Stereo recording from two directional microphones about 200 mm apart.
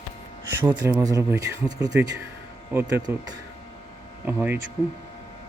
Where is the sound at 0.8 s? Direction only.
15° right (ahead or behind).